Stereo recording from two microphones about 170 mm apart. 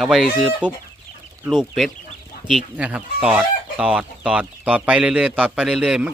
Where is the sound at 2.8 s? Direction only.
5° right (ahead or behind).